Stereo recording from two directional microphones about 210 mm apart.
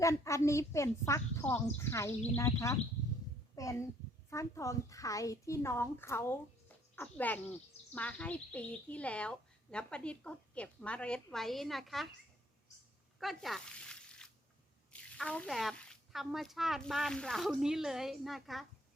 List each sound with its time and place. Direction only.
0.0 s a child's voice: 15° left (ahead or behind)
13.1 s a sound: centre (ahead or behind)
14.9 s speech: 5° left (ahead or behind)